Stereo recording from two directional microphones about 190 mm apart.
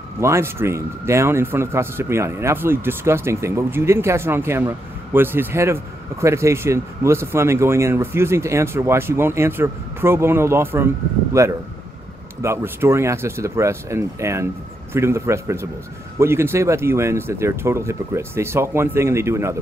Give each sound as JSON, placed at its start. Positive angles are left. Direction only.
{"t": 0.2, "sound": "speech", "side_deg": -15}